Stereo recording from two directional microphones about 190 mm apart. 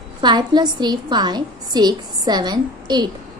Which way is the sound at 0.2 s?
25° right (ahead or behind).